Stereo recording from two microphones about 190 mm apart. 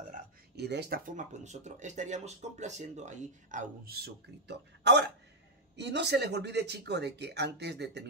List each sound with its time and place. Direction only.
0.1 s speech: 60° right (ahead or behind)